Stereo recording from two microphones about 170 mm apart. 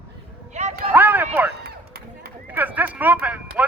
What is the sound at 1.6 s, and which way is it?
Run, 65° right (ahead or behind).